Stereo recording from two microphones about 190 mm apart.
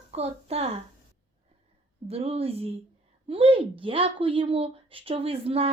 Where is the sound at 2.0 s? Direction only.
30° right (ahead or behind).